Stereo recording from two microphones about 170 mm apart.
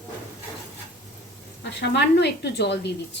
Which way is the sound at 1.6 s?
90° left.